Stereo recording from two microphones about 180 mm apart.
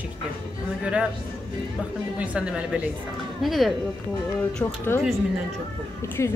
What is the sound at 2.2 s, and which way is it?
A woman's voice, 5° right (ahead or behind).